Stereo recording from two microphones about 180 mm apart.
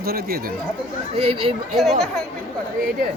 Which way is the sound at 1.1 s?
35° right (ahead or behind).